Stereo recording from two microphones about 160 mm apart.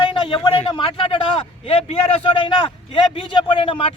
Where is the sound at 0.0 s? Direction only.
30° left (ahead or behind).